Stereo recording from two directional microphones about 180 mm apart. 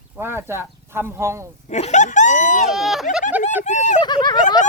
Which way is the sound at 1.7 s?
40° left (ahead or behind).